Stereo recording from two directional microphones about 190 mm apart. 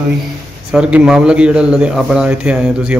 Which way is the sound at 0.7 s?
5° right (ahead or behind).